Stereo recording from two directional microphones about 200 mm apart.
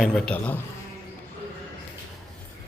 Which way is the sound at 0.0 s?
Centre (ahead or behind).